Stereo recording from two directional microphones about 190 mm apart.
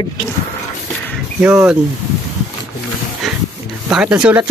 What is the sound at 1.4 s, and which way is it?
Speech, 10° right (ahead or behind).